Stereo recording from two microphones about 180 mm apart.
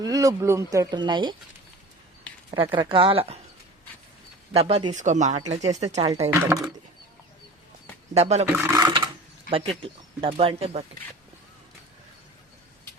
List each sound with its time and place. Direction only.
0.0 s speech: 20° right (ahead or behind)
2.7 s speech: 30° right (ahead or behind)
4.5 s speech: 35° right (ahead or behind)
4.9 s speech: 40° right (ahead or behind)
8.1 s speech: 35° right (ahead or behind)
8.5 s speech: 15° right (ahead or behind)
9.5 s speech: 30° right (ahead or behind)